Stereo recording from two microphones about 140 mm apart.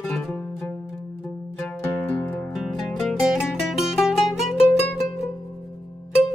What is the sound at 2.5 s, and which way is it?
Music, centre (ahead or behind).